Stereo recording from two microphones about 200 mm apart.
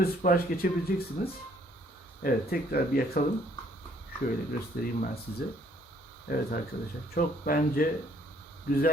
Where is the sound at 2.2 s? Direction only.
50° left (ahead or behind).